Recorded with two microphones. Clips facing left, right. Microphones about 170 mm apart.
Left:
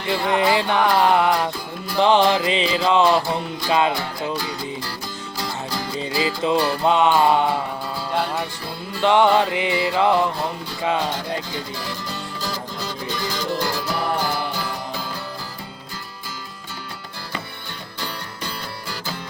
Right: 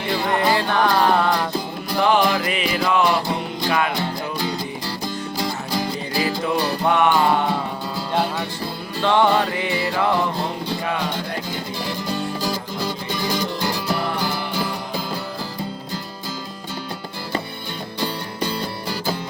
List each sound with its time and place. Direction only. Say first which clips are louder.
0.3 s music: left 1 dB; 15° left (ahead or behind)
2.0 s music: left 2 dB; 25° left (ahead or behind)
5.4 s music: right 2 dB; 15° right (ahead or behind)
6.4 s music: left 5 dB; 20° left (ahead or behind)
9.0 s music: left 1 dB; 15° left (ahead or behind)
11.9 s music: right 6 dB; 15° right (ahead or behind)